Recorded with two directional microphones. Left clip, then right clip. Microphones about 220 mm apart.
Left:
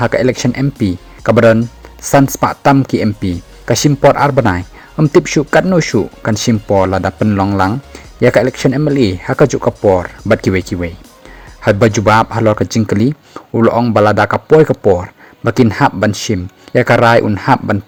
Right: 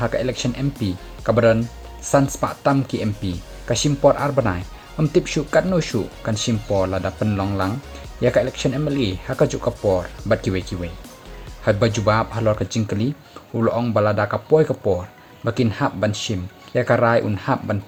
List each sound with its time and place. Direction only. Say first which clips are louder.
0.0 s speech: left 9 dB; 45° left (ahead or behind)